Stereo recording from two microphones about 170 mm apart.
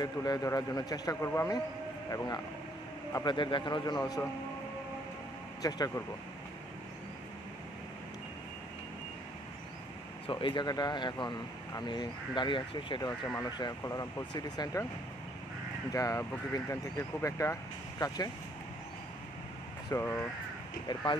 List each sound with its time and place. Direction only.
0.0 s speech: 25° left (ahead or behind)
4.0 s speech: 15° left (ahead or behind)
5.6 s speech: 20° left (ahead or behind)
10.3 s speech: 25° left (ahead or behind)
15.9 s speech: 20° left (ahead or behind)
19.9 s speech: 10° left (ahead or behind)